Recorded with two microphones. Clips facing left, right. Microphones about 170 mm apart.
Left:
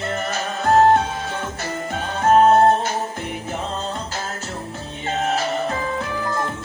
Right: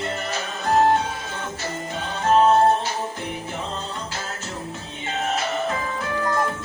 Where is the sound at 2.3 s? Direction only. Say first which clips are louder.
Left 3 dB; 50° left (ahead or behind).